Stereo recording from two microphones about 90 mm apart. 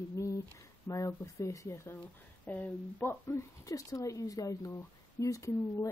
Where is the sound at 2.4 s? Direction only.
20° left (ahead or behind).